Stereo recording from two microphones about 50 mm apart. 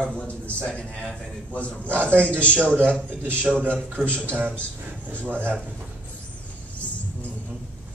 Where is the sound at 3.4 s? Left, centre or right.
Right.